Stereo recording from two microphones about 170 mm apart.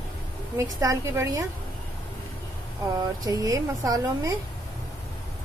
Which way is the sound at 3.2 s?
20° right (ahead or behind).